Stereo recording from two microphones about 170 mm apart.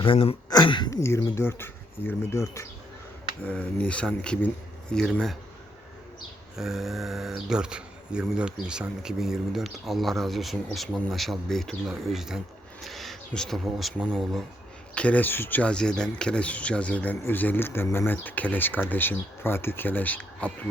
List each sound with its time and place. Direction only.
0.0 s speech: 30° left (ahead or behind); by 5.4 s centre (ahead or behind)
6.6 s speech: centre (ahead or behind)